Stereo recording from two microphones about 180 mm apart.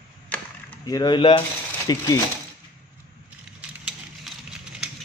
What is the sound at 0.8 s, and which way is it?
Speech, 20° left (ahead or behind).